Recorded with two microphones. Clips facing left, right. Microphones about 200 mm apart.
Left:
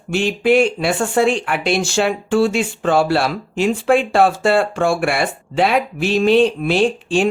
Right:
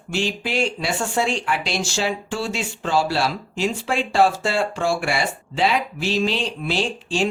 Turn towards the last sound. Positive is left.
turn(degrees=55)  # may be behind; listen again after turning